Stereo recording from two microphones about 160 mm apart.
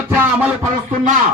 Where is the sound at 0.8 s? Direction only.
55° right (ahead or behind).